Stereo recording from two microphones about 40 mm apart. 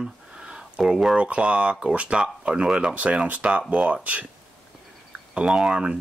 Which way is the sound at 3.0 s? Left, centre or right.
Right.